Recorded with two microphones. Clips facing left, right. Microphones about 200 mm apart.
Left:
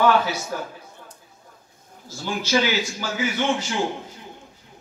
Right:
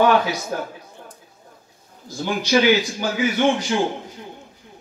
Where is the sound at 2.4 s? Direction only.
15° right (ahead or behind).